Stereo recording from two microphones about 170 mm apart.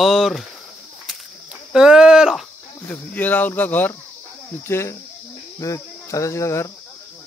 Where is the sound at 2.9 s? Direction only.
10° left (ahead or behind).